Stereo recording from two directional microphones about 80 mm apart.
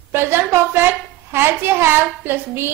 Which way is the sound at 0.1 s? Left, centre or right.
Right.